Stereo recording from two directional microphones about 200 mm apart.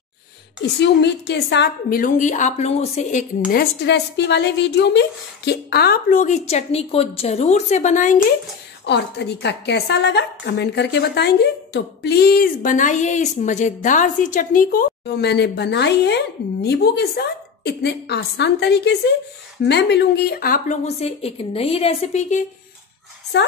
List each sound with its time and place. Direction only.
0.6 s a woman's voice: 60° left (ahead or behind); by 3.3 s 35° left (ahead or behind)
3.5 s a woman's voice: 55° left (ahead or behind); by 8.2 s 40° left (ahead or behind)
8.8 s a woman's voice: 60° left (ahead or behind); by 22.4 s 35° left (ahead or behind)
23.3 s a woman's voice: 60° left (ahead or behind)